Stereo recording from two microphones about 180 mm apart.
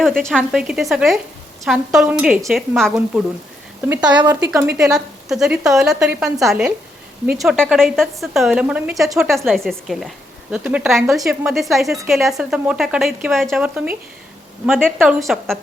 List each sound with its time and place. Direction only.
0.0 s a woman's voice: centre (ahead or behind)
3.8 s speech: 10° right (ahead or behind)
4.5 s a woman's voice: centre (ahead or behind)
15.2 s a woman's voice: centre (ahead or behind)